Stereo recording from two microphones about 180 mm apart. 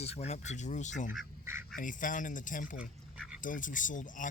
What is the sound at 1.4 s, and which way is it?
Speech, 15° right (ahead or behind).